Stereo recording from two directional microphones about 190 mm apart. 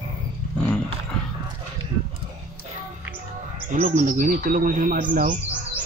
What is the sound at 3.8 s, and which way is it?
Speech, 40° right (ahead or behind).